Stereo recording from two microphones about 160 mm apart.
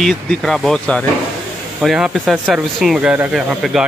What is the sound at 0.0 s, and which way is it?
Speech, 5° left (ahead or behind).